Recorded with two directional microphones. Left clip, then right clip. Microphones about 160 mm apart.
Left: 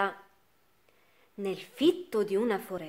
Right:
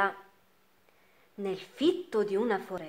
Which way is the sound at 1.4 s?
25° left (ahead or behind).